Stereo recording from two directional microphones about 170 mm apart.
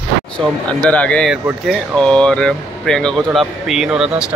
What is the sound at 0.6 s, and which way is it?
Speech, 5° left (ahead or behind).